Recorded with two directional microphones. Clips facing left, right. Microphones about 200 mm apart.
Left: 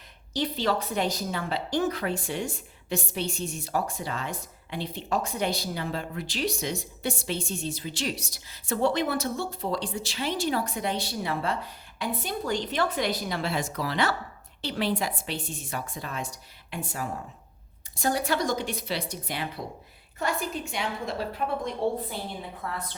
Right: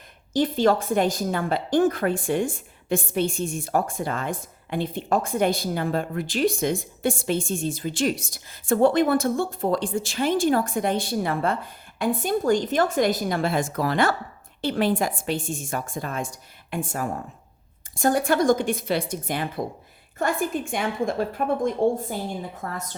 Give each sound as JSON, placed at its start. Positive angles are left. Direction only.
{"t": 0.3, "sound": "a woman's voice", "side_deg": -50}